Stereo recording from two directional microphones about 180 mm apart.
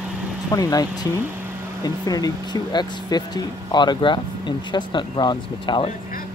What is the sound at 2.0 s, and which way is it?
Speech, 20° left (ahead or behind).